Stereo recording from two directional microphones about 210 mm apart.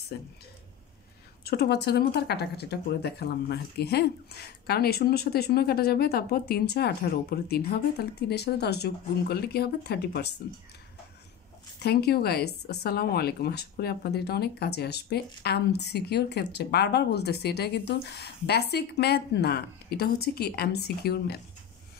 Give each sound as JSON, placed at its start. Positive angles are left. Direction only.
{"t": 0.1, "sound": "speech", "side_deg": 50}
{"t": 1.4, "sound": "speech", "side_deg": 50}
{"t": 11.8, "sound": "speech", "side_deg": 50}